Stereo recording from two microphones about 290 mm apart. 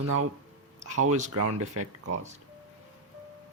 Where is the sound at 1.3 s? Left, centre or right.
Right.